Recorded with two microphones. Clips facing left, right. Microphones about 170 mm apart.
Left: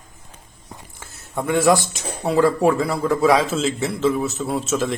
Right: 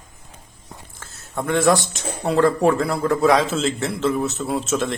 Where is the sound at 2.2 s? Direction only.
5° left (ahead or behind).